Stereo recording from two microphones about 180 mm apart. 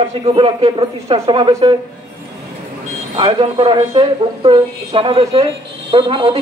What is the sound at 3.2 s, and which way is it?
A man's voice, 25° right (ahead or behind).